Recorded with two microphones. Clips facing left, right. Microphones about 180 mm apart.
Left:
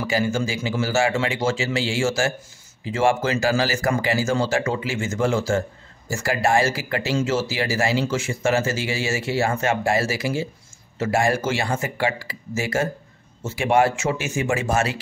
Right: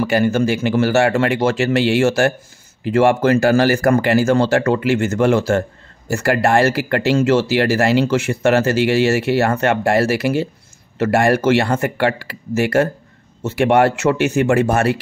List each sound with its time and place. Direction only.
0.0 s speech: 60° right (ahead or behind)